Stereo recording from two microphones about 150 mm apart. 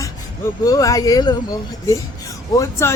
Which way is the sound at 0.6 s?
25° left (ahead or behind).